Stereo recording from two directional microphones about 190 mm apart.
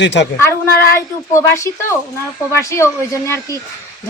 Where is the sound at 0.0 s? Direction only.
65° left (ahead or behind).